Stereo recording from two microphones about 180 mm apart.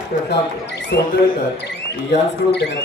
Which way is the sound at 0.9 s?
65° left (ahead or behind).